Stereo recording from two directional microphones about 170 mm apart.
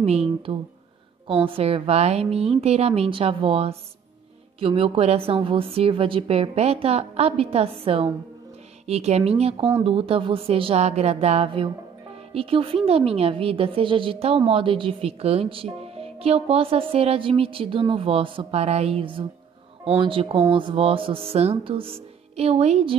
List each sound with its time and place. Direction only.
0.0 s a woman's voice: 35° right (ahead or behind)